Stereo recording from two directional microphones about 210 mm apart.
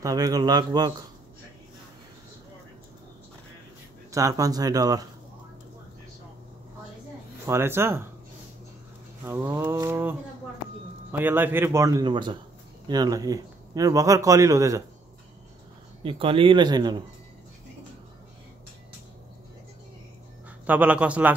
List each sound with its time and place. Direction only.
0.0 s speech: 15° right (ahead or behind)
4.1 s speech: 15° right (ahead or behind)
7.4 s speech: 10° right (ahead or behind)
9.2 s speech: 10° right (ahead or behind)
16.0 s speech: 25° right (ahead or behind)
20.6 s speech: 5° right (ahead or behind)